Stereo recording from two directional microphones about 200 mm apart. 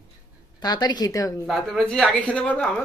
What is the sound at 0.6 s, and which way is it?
Speech, 20° left (ahead or behind).